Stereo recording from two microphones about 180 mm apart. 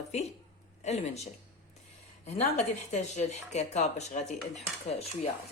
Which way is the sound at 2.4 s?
40° left (ahead or behind).